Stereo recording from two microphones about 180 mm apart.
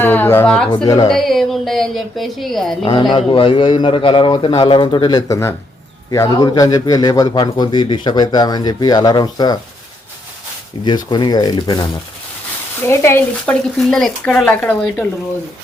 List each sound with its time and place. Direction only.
0.0 s speech: 10° left (ahead or behind)
0.9 s speech: 20° left (ahead or behind)
1.1 s speech: centre (ahead or behind)
2.8 s speech: 25° left (ahead or behind)
10.8 s speech: 25° left (ahead or behind)
13.4 s speech: 5° left (ahead or behind)